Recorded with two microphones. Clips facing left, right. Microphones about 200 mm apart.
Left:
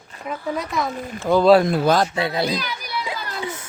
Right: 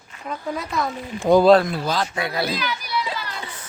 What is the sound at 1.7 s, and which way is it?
Speech, 50° left (ahead or behind).